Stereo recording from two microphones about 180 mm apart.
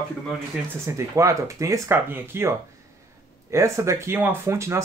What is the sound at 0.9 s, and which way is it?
Speech, 15° right (ahead or behind).